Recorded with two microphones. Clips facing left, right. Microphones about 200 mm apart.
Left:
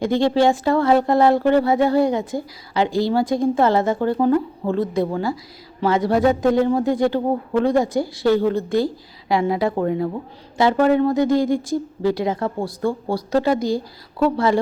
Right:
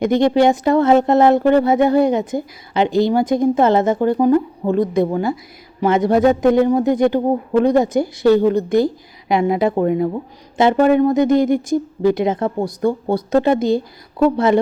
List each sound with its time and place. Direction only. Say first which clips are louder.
0.0 s speech: right 3 dB; 20° right (ahead or behind)